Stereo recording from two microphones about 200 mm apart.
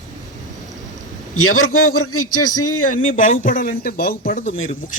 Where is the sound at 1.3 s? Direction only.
90° left.